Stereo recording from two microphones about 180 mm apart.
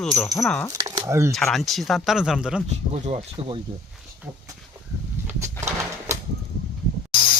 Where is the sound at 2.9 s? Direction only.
35° right (ahead or behind).